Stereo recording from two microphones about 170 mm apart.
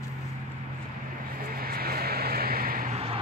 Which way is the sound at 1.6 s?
60° right (ahead or behind).